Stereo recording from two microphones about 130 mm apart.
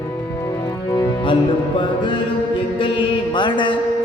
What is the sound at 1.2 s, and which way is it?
Music, 40° left (ahead or behind).